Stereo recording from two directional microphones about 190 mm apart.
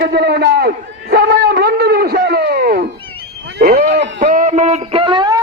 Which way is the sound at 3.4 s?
60° right (ahead or behind).